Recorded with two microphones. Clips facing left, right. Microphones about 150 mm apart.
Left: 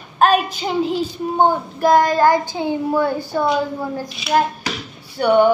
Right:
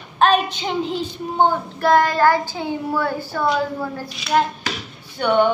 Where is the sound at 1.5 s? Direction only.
15° left (ahead or behind).